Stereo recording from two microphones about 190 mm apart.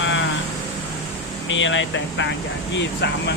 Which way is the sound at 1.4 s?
85° left.